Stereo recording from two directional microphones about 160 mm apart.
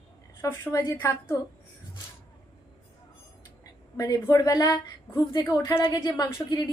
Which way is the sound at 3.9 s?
20° left (ahead or behind).